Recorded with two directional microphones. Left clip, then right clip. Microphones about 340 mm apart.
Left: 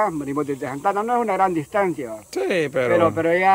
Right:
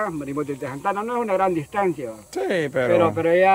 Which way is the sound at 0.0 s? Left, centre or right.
Centre.